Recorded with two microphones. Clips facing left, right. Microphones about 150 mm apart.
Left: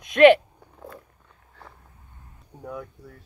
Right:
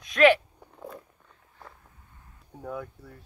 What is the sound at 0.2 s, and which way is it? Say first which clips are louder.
Speech: left 6 dB; 30° left (ahead or behind).